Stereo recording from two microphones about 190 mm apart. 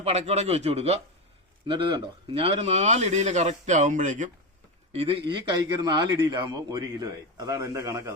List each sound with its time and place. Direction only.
0.0 s speech: 35° right (ahead or behind)
4.9 s speech: 30° right (ahead or behind)